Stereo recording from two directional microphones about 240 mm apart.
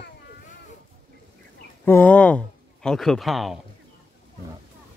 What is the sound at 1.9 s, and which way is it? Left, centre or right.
Speech, centre.